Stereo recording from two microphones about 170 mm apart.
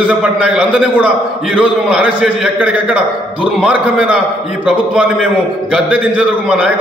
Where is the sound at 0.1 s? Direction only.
5° right (ahead or behind).